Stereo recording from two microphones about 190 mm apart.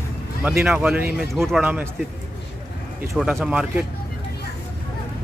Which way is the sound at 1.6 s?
10° right (ahead or behind).